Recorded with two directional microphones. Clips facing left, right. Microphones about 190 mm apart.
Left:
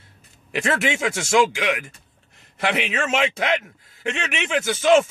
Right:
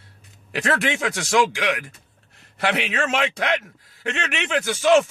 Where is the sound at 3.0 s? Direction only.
5° left (ahead or behind).